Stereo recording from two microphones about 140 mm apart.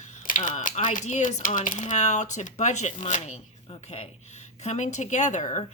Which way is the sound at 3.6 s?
45° left (ahead or behind).